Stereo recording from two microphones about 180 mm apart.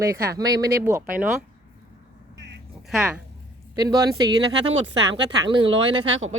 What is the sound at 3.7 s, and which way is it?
Speech, 20° right (ahead or behind).